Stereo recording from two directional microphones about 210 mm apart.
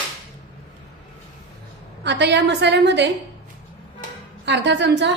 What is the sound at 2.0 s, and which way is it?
A woman's voice, 55° right (ahead or behind).